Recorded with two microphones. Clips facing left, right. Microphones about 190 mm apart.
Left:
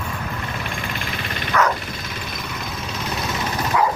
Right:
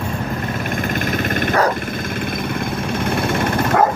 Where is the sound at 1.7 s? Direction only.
50° right (ahead or behind).